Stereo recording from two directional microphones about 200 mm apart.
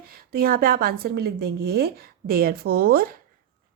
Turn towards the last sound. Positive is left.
turn(degrees=-45)  # may be behind; listen again after turning